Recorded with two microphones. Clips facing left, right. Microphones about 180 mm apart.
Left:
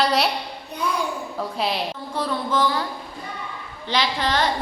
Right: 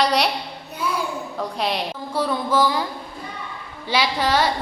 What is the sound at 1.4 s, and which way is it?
Speech, 5° left (ahead or behind).